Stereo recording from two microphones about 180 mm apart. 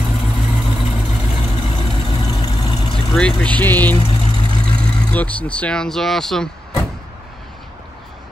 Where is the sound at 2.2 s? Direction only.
20° left (ahead or behind).